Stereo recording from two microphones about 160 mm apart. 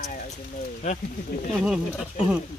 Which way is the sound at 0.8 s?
45° left (ahead or behind).